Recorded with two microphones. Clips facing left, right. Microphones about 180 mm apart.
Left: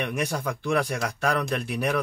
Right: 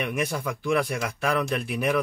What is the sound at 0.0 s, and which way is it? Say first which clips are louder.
Speech: even; 40° left (ahead or behind).